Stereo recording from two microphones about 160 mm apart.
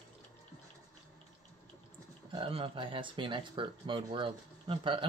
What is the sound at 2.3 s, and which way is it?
Speech, 35° right (ahead or behind).